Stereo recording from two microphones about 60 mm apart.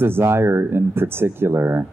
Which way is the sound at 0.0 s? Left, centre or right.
Right.